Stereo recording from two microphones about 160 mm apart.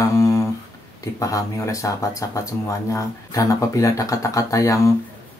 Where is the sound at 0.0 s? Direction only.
20° left (ahead or behind).